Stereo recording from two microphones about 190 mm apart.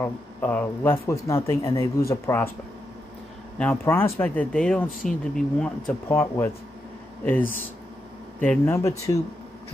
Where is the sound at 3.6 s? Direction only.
10° left (ahead or behind).